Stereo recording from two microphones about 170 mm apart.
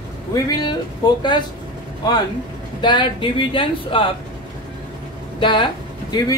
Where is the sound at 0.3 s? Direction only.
25° left (ahead or behind).